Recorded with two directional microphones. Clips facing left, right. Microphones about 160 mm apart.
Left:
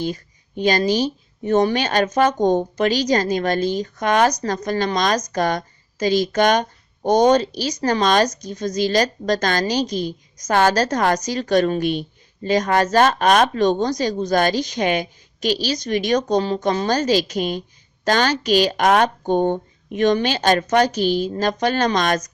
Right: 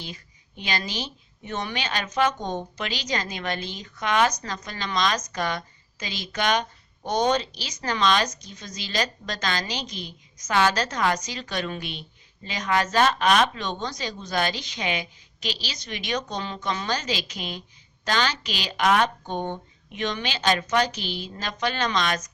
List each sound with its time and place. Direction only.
0.0 s speech: 45° left (ahead or behind)